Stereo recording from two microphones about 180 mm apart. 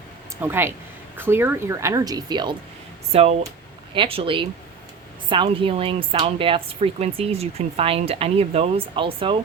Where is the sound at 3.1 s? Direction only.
35° right (ahead or behind).